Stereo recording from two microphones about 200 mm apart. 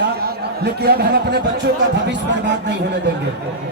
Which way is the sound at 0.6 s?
50° right (ahead or behind).